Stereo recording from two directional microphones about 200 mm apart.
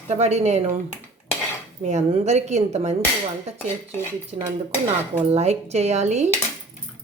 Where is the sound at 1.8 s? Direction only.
35° right (ahead or behind).